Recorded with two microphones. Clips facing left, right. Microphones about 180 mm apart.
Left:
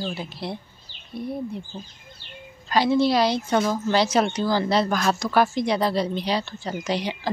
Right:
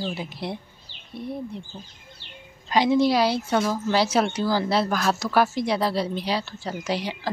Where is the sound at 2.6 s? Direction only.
20° right (ahead or behind); by 7.3 s centre (ahead or behind).